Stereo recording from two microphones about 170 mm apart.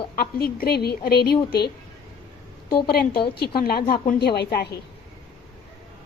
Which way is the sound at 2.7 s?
65° left (ahead or behind).